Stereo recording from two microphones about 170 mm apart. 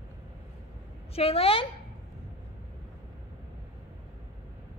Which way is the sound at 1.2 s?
35° left (ahead or behind).